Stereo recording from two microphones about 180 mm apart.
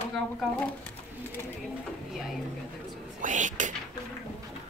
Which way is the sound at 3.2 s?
45° right (ahead or behind).